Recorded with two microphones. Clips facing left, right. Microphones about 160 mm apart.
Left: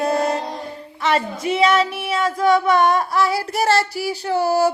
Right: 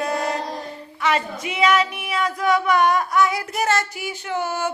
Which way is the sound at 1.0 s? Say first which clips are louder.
Left 2 dB; 35° left (ahead or behind).